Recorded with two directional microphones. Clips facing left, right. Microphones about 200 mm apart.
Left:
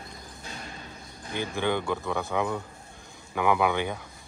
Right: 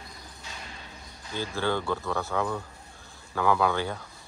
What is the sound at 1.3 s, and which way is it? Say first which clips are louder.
Speech: left 1 dB; 15° left (ahead or behind).